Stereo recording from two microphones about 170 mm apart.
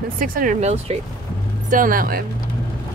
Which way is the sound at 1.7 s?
55° right (ahead or behind).